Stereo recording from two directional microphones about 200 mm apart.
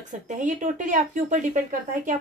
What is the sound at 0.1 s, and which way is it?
A woman's voice, 40° right (ahead or behind).